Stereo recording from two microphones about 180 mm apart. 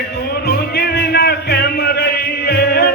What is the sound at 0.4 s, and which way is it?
Music, 65° left (ahead or behind).